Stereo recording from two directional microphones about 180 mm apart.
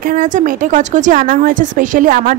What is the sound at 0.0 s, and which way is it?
Speech, 50° right (ahead or behind).